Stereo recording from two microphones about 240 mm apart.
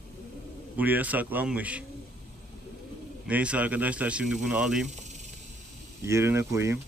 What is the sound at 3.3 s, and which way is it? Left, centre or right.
Speech, centre.